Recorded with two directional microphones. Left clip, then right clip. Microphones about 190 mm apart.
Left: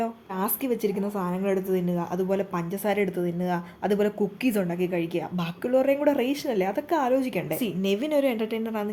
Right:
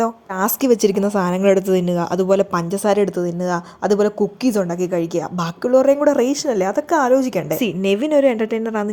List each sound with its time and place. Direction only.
0.0 s a woman's voice: 40° right (ahead or behind)